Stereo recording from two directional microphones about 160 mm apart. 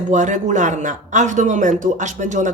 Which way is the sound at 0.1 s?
50° right (ahead or behind).